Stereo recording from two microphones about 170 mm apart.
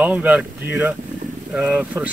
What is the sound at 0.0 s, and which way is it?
Speech, 10° right (ahead or behind).